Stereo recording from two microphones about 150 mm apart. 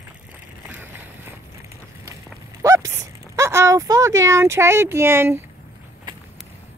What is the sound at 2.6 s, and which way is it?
Speech, 20° right (ahead or behind).